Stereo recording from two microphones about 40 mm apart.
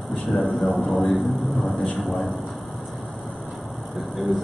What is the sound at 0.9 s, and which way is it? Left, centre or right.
A man's voice, centre.